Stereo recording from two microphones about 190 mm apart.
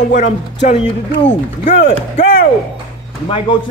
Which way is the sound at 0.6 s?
40° left (ahead or behind).